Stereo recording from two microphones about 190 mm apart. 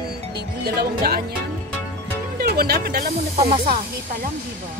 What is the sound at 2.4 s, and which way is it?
Speech, 55° right (ahead or behind).